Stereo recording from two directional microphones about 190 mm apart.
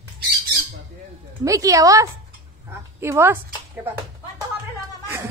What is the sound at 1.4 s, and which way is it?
A woman's voice, 15° right (ahead or behind).